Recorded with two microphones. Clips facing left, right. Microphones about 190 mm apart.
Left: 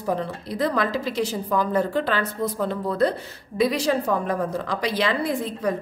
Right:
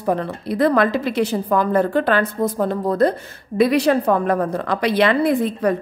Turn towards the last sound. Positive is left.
turn(degrees=-60)  # may be behind; listen again after turning